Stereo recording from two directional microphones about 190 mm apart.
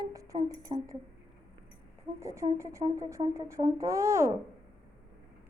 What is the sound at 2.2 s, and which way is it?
Speech, 15° right (ahead or behind).